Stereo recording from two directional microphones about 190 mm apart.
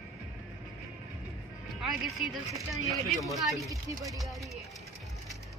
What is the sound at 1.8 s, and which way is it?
Speech, centre (ahead or behind).